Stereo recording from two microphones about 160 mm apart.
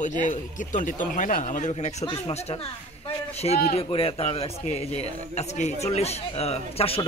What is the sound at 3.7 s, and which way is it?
Speech, 35° left (ahead or behind).